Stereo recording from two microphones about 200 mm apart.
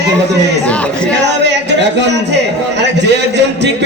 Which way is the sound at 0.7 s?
5° left (ahead or behind).